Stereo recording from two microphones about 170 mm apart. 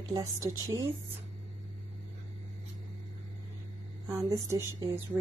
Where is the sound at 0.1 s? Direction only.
20° right (ahead or behind).